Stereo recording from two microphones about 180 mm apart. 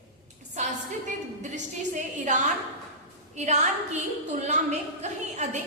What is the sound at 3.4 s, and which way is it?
A woman's voice, 40° right (ahead or behind).